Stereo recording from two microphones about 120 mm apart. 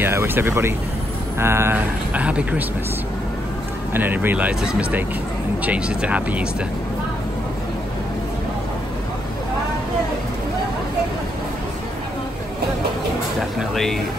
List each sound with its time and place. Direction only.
0.0 s speech: 20° right (ahead or behind)
3.9 s speech: 15° right (ahead or behind)
13.6 s speech: centre (ahead or behind)